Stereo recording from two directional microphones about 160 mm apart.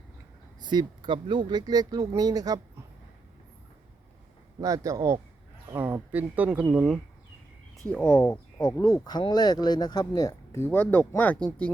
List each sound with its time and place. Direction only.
0.6 s speech: 25° right (ahead or behind)
4.6 s speech: 20° right (ahead or behind)
7.9 s speech: 10° left (ahead or behind)